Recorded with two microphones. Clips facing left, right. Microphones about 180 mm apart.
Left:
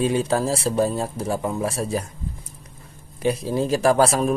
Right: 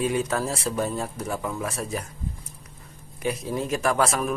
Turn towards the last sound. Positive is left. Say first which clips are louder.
# left 6 dB
turn(degrees=30)  # may be behind; listen again after turning